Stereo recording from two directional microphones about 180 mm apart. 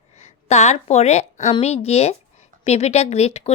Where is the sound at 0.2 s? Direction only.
40° left (ahead or behind).